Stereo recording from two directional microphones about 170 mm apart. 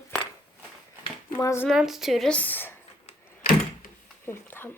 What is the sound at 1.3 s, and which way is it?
Speech, 15° left (ahead or behind).